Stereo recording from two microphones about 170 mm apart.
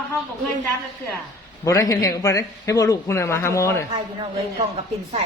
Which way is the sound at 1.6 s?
20° left (ahead or behind).